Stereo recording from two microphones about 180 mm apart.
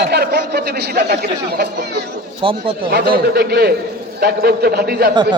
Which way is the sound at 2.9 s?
60° right (ahead or behind).